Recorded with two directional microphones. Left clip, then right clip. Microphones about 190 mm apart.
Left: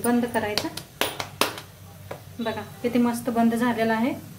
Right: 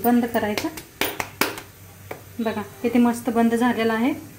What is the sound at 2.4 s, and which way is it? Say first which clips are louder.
A woman's voice: right 3 dB; 35° right (ahead or behind).